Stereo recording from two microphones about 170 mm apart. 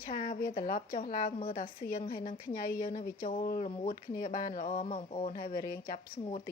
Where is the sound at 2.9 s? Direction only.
30° left (ahead or behind).